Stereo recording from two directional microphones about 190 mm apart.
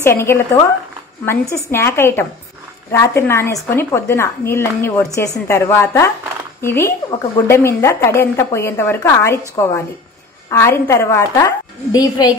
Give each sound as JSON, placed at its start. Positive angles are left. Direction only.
{"t": 0.0, "sound": "a woman's voice", "side_deg": 15}